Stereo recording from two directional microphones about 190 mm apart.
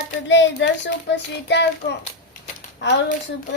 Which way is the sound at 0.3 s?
75° left (ahead or behind).